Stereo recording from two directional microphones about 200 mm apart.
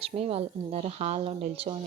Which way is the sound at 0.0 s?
30° right (ahead or behind).